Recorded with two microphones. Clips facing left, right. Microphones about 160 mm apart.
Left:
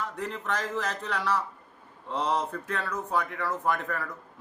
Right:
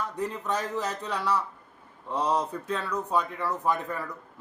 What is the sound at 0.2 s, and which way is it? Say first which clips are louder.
A man's voice: right 3 dB; 15° right (ahead or behind).